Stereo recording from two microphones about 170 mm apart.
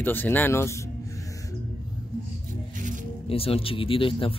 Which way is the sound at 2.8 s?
50° right (ahead or behind).